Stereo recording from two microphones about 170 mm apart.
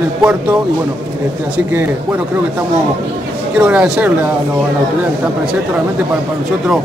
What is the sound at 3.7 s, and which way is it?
Speech, 10° right (ahead or behind).